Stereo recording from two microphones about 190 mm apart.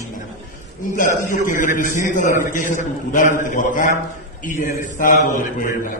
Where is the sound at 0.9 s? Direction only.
40° left (ahead or behind).